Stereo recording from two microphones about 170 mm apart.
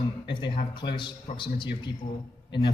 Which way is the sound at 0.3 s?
25° left (ahead or behind).